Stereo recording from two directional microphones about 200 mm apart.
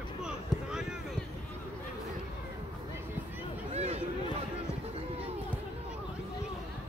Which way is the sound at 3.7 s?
30° right (ahead or behind).